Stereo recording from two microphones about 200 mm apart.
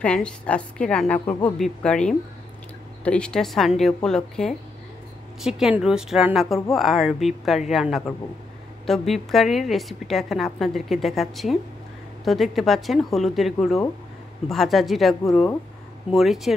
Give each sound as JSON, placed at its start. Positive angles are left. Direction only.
{"t": 0.0, "sound": "a woman's voice", "side_deg": 5}